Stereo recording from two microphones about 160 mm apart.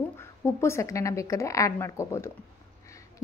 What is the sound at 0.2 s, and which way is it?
A woman's voice, 15° left (ahead or behind).